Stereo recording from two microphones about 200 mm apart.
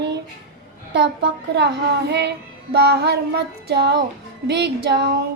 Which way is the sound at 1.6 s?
60° right (ahead or behind).